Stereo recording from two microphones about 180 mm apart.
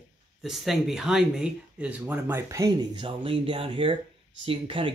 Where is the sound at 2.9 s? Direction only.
30° right (ahead or behind).